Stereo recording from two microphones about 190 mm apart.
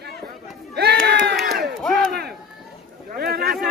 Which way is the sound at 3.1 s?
55° right (ahead or behind).